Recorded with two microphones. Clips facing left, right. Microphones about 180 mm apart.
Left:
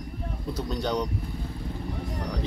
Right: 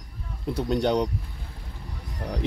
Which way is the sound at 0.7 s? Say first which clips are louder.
Right 7 dB; 60° right (ahead or behind).